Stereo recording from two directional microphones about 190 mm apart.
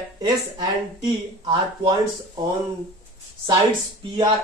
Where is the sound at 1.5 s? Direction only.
25° right (ahead or behind).